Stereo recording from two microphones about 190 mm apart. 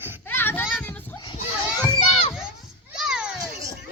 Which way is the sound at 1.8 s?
25° left (ahead or behind).